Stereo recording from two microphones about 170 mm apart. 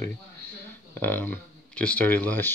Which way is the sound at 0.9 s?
10° left (ahead or behind).